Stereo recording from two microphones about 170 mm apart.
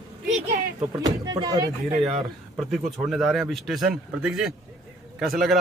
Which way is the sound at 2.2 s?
Centre (ahead or behind).